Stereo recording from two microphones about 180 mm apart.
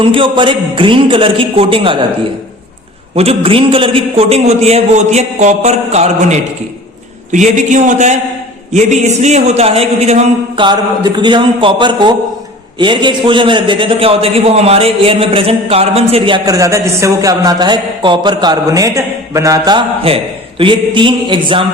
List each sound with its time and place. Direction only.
0.0 s a man's voice: 30° right (ahead or behind)
3.2 s a man's voice: 30° right (ahead or behind)